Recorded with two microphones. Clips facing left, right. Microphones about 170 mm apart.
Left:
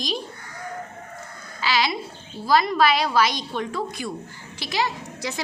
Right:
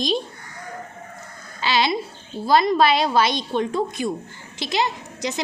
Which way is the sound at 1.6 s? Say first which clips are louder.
Right 3 dB; 25° right (ahead or behind).